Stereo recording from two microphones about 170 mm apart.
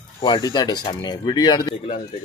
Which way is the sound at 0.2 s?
25° left (ahead or behind).